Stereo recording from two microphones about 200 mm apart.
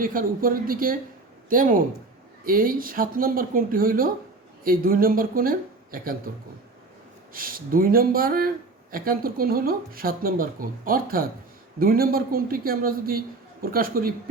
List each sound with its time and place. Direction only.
0.0 s speech: 45° right (ahead or behind)
7.3 s speech: 45° right (ahead or behind)